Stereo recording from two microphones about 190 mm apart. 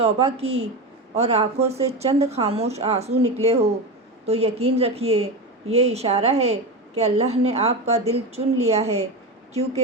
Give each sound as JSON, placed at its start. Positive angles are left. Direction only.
{"t": 0.0, "sound": "speech", "side_deg": -30}